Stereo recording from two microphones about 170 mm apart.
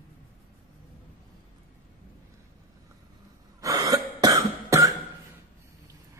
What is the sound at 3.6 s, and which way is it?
Cough, 20° right (ahead or behind).